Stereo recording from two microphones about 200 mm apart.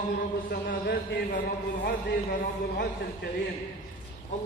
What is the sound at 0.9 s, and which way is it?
Speech, 55° left (ahead or behind).